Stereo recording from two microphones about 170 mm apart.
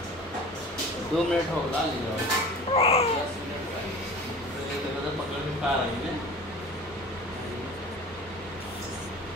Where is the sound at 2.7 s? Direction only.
35° left (ahead or behind).